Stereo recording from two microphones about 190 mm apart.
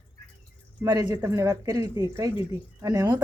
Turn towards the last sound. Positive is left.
turn(degrees=-20)  # may be behind; listen again after turning